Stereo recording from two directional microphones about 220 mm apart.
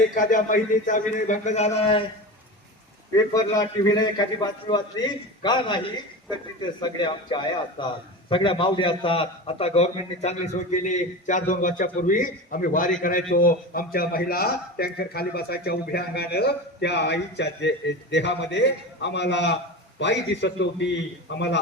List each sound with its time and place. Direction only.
0.1 s a man's voice: 35° left (ahead or behind)
3.3 s a man's voice: 15° left (ahead or behind); by 21.6 s 55° left (ahead or behind)